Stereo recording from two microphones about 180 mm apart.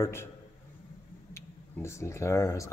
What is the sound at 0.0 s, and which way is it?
Speech, 15° left (ahead or behind).